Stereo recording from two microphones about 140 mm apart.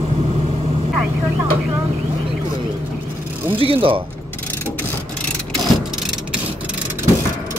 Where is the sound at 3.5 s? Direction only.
40° right (ahead or behind).